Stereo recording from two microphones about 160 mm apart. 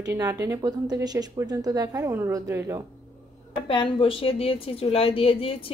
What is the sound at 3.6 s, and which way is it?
A woman's voice, 35° left (ahead or behind).